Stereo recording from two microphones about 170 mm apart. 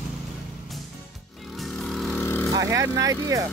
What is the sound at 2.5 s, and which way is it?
Speech, 20° right (ahead or behind).